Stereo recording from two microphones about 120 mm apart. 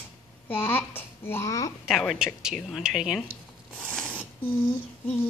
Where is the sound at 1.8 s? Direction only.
Centre (ahead or behind).